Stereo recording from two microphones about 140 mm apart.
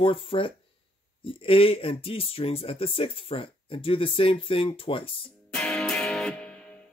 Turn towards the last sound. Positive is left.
turn(degrees=10)  # may be behind; listen again after turning